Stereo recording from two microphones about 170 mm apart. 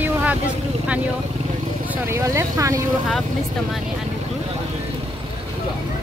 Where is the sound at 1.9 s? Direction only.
15° right (ahead or behind).